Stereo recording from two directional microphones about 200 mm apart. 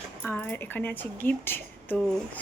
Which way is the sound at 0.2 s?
10° left (ahead or behind).